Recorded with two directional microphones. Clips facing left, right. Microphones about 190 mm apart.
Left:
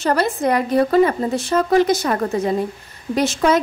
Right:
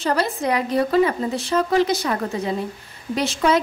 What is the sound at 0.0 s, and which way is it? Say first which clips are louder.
A woman's voice: left 3 dB; 50° left (ahead or behind).